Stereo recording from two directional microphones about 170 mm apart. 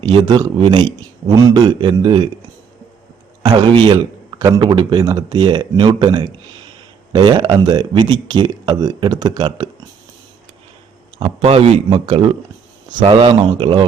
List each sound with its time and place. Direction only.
0.1 s a man's voice: 30° right (ahead or behind)
3.4 s a man's voice: 25° right (ahead or behind)
11.2 s a man's voice: 35° right (ahead or behind)